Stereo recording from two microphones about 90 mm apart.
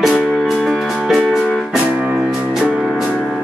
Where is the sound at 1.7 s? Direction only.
15° right (ahead or behind).